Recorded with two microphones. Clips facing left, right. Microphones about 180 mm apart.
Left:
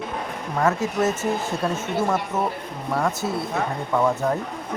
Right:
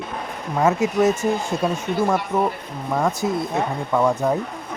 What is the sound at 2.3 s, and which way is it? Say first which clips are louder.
Speech: right 6 dB; 5° left (ahead or behind).